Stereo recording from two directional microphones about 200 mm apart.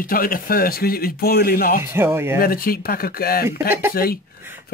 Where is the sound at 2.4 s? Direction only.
45° left (ahead or behind).